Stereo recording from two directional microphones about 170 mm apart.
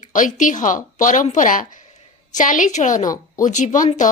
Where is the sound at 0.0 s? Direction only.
50° left (ahead or behind).